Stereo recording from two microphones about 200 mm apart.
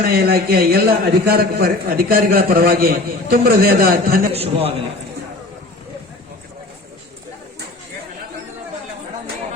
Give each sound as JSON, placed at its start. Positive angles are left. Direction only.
{"t": 0.0, "sound": "a man's voice", "side_deg": -50}
{"t": 4.3, "sound": "a man's voice", "side_deg": -30}